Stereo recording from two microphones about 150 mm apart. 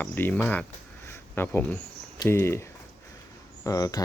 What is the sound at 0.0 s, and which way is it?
Speech, 15° left (ahead or behind).